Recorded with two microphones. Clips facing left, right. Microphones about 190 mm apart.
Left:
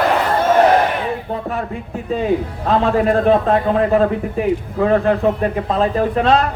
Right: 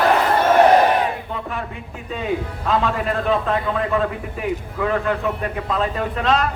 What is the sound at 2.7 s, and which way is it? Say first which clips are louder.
A man's voice: left 6 dB; 35° left (ahead or behind).